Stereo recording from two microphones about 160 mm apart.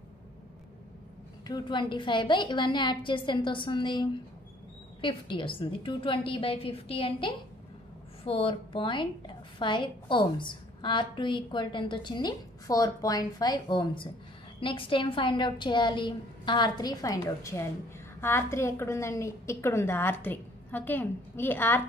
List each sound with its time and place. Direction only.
1.5 s a woman's voice: 30° left (ahead or behind); by 21.8 s 15° left (ahead or behind)